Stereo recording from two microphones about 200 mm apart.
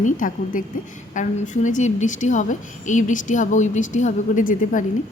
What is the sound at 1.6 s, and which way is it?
A woman's voice, 40° left (ahead or behind).